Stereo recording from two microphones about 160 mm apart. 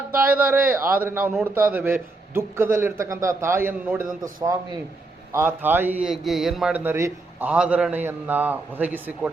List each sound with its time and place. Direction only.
0.1 s a man's voice: 10° right (ahead or behind)